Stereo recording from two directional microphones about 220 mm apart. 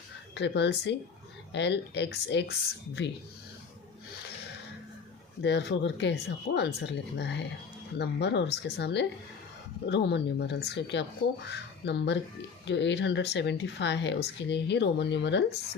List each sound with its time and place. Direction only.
0.3 s speech: 50° left (ahead or behind)
5.4 s speech: 50° left (ahead or behind)